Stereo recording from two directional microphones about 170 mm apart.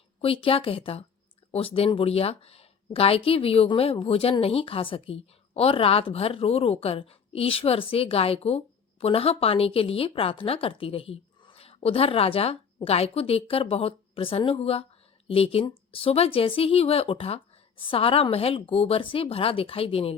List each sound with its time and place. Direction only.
0.2 s speech: 35° left (ahead or behind)